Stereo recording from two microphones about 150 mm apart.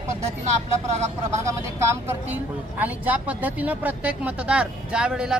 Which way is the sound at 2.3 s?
10° right (ahead or behind).